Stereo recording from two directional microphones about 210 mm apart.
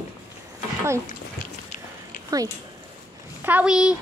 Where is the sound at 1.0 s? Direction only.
40° left (ahead or behind).